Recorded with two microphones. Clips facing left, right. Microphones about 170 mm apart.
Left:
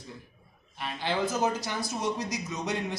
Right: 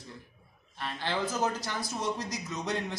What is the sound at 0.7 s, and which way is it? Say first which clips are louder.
A man's voice: left 3 dB; 15° left (ahead or behind).